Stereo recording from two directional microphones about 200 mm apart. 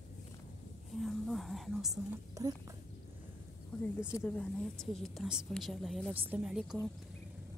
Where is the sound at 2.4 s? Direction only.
15° right (ahead or behind).